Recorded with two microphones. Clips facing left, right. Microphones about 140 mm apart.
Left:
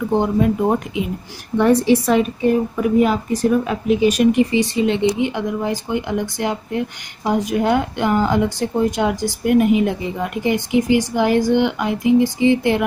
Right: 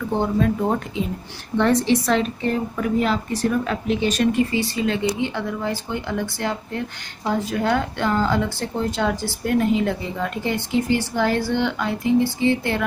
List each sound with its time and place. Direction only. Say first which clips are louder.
0.1 s a woman's voice: left 3 dB; 15° left (ahead or behind)